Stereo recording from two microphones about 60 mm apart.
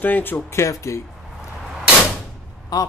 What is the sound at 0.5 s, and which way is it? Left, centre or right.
Speech, left.